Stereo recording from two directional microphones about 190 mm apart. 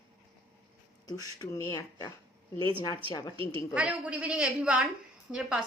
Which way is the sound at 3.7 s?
5° right (ahead or behind).